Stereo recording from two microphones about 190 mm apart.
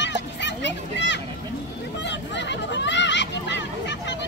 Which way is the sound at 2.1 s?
65° left (ahead or behind).